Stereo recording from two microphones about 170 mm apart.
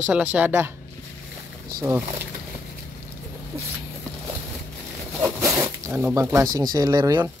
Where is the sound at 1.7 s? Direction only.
15° right (ahead or behind).